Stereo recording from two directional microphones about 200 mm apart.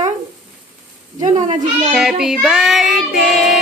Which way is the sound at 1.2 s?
35° right (ahead or behind).